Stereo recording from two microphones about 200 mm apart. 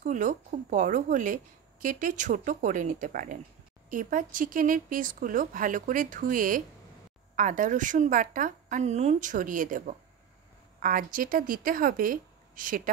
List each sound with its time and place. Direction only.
0.0 s a woman's voice: 40° right (ahead or behind)